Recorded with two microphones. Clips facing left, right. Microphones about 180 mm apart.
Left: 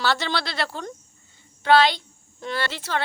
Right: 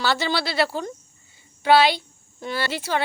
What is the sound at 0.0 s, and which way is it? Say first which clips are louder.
Speech: right 1 dB; 5° right (ahead or behind).